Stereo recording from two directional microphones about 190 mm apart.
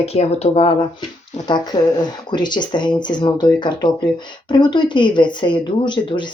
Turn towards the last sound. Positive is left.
turn(degrees=25)  # may be behind; listen again after turning